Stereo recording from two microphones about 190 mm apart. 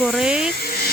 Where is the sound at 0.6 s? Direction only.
55° left (ahead or behind).